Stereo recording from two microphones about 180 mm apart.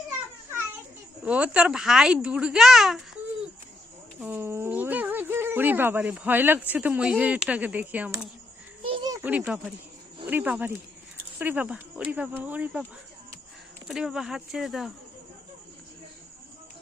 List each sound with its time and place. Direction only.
1.2 s speech: 5° right (ahead or behind)
4.2 s speech: 10° right (ahead or behind)
8.8 s a sound: 30° right (ahead or behind)
9.1 s speech: 10° right (ahead or behind)
13.8 s speech: 5° right (ahead or behind)